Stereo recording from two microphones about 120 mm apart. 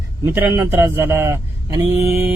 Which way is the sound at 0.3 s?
20° right (ahead or behind).